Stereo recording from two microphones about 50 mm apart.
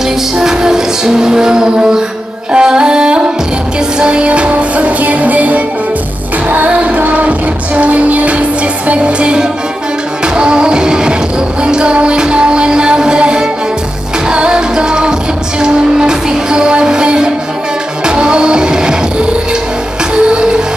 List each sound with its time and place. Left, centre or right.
0.4 s music: centre